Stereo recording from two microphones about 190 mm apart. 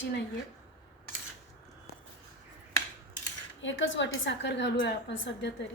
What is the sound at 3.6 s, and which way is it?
A woman's voice, 80° left.